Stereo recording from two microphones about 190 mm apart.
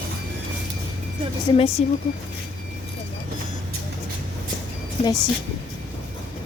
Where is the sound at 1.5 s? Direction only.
30° left (ahead or behind).